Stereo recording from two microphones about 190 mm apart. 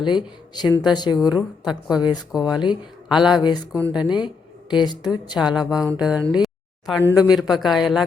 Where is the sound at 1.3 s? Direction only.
5° right (ahead or behind).